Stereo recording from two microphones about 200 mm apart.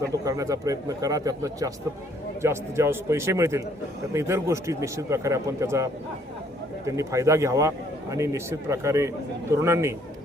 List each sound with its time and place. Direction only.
0.1 s a man's voice: 15° right (ahead or behind)